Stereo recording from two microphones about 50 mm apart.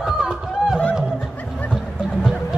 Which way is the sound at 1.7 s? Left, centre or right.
Centre.